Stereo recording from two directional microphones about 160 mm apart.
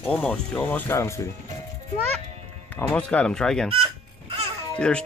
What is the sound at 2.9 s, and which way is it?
Speech, 5° left (ahead or behind).